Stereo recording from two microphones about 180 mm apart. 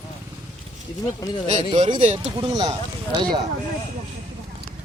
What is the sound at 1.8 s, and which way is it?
Speech, 25° right (ahead or behind).